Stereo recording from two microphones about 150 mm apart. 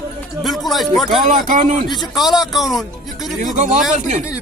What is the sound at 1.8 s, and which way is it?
Speech, centre (ahead or behind).